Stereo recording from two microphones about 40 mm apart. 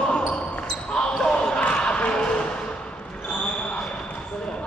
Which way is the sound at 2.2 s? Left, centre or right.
Left.